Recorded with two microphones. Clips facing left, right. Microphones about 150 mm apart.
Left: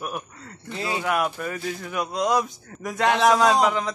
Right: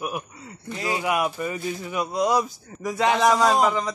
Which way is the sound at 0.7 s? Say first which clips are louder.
Right 1 dB; 30° left (ahead or behind).